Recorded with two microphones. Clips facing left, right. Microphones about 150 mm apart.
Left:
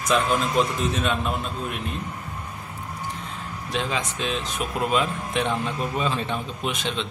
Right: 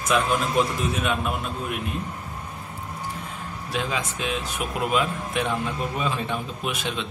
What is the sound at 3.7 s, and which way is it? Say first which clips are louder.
Speech: left 1 dB; 5° right (ahead or behind).